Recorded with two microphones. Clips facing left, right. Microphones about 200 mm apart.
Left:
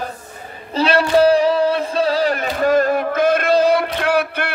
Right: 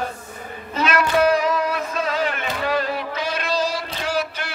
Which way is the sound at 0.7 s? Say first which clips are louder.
Left 5 dB; 30° left (ahead or behind).